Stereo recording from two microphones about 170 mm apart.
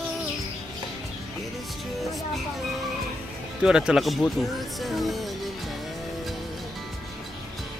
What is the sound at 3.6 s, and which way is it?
Speech, 5° right (ahead or behind).